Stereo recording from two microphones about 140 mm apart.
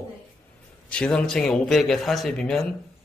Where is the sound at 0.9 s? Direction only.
10° left (ahead or behind).